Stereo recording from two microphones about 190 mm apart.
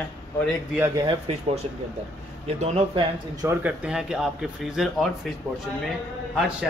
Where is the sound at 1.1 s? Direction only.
30° right (ahead or behind).